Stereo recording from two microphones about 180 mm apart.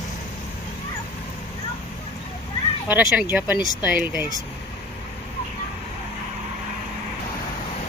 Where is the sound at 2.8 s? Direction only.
10° right (ahead or behind).